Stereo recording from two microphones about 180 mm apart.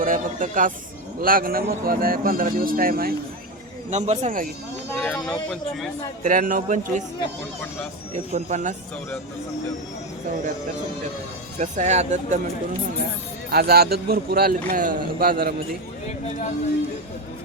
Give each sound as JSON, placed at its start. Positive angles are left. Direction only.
{"t": 0.0, "sound": "speech", "side_deg": -50}
{"t": 3.8, "sound": "speech", "side_deg": -40}
{"t": 4.9, "sound": "speech", "side_deg": 5}
{"t": 6.2, "sound": "speech", "side_deg": -45}
{"t": 8.1, "sound": "speech", "side_deg": -40}
{"t": 11.6, "sound": "speech", "side_deg": -40}
{"t": 13.5, "sound": "a man's voice", "side_deg": -60}